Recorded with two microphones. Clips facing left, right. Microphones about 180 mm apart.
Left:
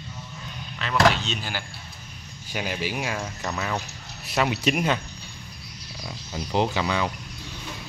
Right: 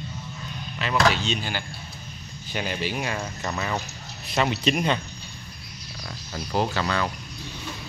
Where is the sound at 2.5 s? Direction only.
10° left (ahead or behind).